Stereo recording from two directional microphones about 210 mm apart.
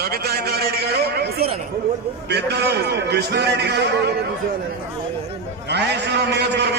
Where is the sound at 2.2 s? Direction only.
50° right (ahead or behind).